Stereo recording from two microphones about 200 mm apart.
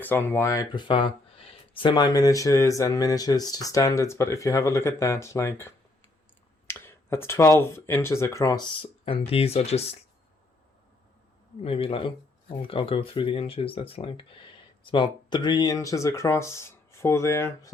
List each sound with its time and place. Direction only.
0.0 s speech: 10° left (ahead or behind)
6.7 s a sound: 10° left (ahead or behind)
7.6 s speech: 10° left (ahead or behind); by 9.8 s 30° left (ahead or behind)
11.6 s speech: 30° left (ahead or behind)